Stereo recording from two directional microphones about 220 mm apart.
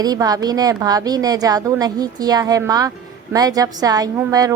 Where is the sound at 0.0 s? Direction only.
15° right (ahead or behind).